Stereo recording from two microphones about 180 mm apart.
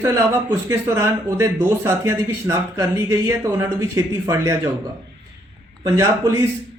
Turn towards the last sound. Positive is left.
turn(degrees=-20)  # may be behind; listen again after turning